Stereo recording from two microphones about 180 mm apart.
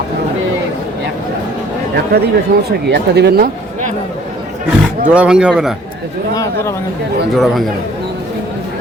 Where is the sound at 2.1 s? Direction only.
55° right (ahead or behind).